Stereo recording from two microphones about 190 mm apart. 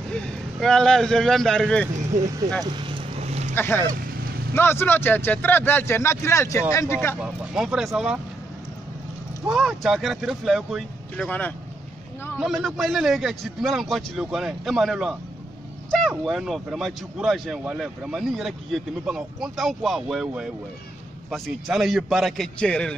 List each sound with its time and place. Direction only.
0.1 s speech: 5° left (ahead or behind)
2.6 s vehicle: 25° right (ahead or behind)
3.5 s speech: 10° left (ahead or behind)
7.2 s speech: centre (ahead or behind)
9.5 s speech: 5° right (ahead or behind)